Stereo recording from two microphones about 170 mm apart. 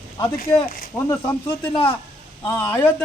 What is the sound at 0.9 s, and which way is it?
Speech, 15° left (ahead or behind).